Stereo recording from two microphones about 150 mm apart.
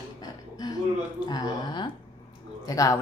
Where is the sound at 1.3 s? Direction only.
30° left (ahead or behind).